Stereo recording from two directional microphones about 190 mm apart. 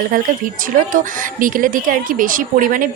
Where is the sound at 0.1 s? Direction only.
45° right (ahead or behind).